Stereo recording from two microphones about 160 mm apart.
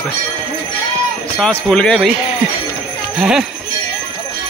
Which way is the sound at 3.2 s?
5° right (ahead or behind).